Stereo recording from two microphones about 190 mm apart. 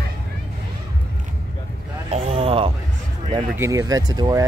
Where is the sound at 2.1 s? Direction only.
30° right (ahead or behind).